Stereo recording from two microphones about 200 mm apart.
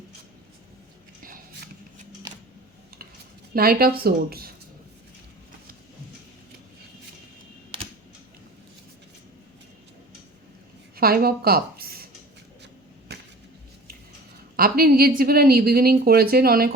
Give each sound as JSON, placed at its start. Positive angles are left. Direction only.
{"t": 3.5, "sound": "a woman's voice", "side_deg": -50}
{"t": 10.9, "sound": "a woman's voice", "side_deg": -50}
{"t": 14.5, "sound": "a woman's voice", "side_deg": -50}